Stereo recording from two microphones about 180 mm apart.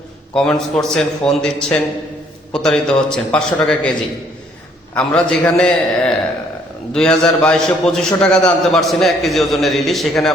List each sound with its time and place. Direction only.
0.3 s a man's voice: 5° left (ahead or behind)
4.9 s a man's voice: 5° left (ahead or behind)